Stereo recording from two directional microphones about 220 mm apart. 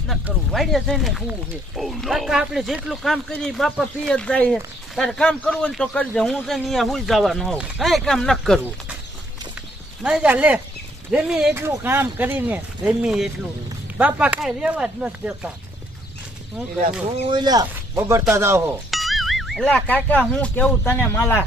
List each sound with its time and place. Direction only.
0.1 s speech: centre (ahead or behind)
10.0 s speech: 5° right (ahead or behind)
17.1 s speech: 20° right (ahead or behind)
18.9 s music: centre (ahead or behind)
20.2 s speech: 5° left (ahead or behind)